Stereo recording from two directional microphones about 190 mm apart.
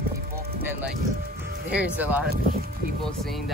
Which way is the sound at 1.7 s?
5° right (ahead or behind).